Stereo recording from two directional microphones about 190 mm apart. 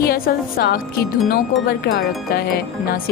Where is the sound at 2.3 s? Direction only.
55° left (ahead or behind).